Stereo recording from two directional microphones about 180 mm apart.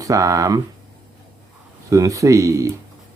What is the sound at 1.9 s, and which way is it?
Speech, 20° right (ahead or behind).